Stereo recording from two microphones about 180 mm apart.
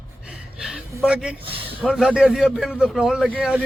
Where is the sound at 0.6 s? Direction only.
5° right (ahead or behind).